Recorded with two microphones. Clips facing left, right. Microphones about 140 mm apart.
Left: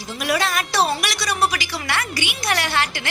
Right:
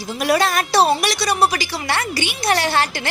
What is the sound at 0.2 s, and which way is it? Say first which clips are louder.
A woman's voice: right 4 dB; 40° right (ahead or behind).